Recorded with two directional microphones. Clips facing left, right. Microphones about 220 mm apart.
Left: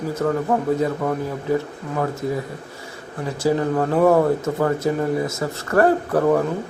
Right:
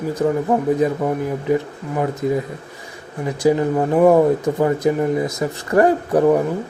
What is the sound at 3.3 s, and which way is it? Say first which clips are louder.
A man's voice: right 3 dB; 15° right (ahead or behind).